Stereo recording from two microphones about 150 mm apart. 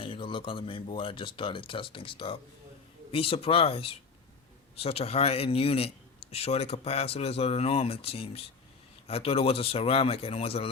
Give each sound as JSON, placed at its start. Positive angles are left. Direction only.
{"t": 0.0, "sound": "speech", "side_deg": 35}